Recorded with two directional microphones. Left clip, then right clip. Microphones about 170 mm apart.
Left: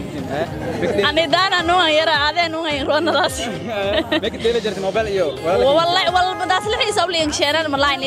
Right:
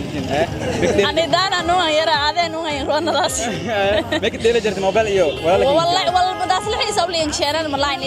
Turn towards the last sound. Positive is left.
turn(degrees=35)  # may be behind; listen again after turning